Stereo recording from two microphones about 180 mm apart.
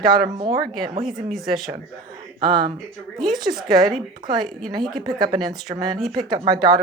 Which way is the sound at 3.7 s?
20° right (ahead or behind).